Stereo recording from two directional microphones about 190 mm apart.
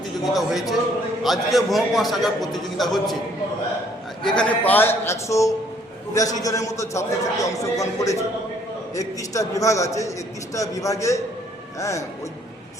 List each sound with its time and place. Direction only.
0.3 s a man's voice: centre (ahead or behind)
4.2 s a man's voice: 5° left (ahead or behind)